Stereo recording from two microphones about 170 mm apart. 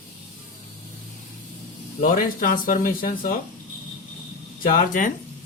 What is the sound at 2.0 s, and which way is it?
Speech, 55° left (ahead or behind).